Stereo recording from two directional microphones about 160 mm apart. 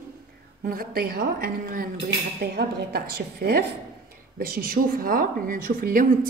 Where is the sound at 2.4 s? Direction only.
85° right.